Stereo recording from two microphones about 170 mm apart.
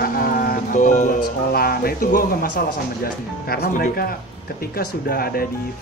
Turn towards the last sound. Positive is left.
turn(degrees=60)  # may be behind; listen again after turning